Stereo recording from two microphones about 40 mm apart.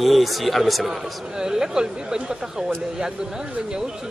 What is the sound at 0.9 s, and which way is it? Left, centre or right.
Speech, centre.